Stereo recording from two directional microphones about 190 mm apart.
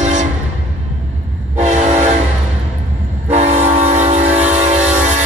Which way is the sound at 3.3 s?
35° right (ahead or behind).